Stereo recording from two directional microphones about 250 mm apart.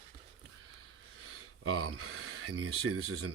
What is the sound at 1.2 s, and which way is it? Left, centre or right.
Speech, right.